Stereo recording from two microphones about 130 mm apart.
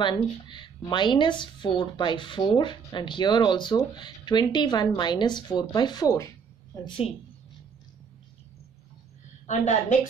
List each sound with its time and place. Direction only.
0.0 s speech: 35° left (ahead or behind)
9.5 s a woman's voice: 65° left (ahead or behind)